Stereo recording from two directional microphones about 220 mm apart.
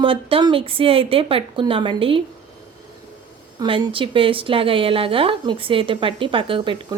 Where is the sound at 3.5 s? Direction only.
20° right (ahead or behind).